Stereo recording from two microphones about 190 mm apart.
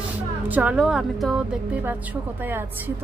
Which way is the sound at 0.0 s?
10° right (ahead or behind).